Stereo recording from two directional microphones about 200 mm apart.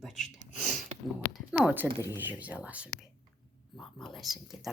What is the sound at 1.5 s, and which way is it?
Speech, 5° right (ahead or behind).